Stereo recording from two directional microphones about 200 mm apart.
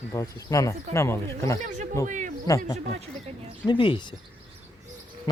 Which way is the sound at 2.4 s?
15° left (ahead or behind).